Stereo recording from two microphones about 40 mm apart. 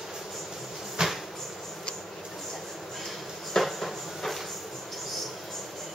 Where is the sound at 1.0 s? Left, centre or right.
Centre.